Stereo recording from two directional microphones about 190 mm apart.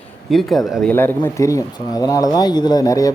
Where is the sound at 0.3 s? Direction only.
Centre (ahead or behind).